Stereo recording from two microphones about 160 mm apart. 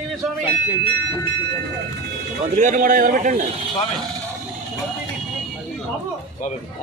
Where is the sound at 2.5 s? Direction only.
55° right (ahead or behind).